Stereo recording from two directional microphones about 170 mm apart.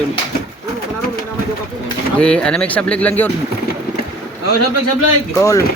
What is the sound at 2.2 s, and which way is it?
Speech, 5° left (ahead or behind).